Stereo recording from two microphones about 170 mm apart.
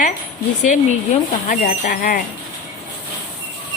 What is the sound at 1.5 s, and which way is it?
Speech, 50° left (ahead or behind).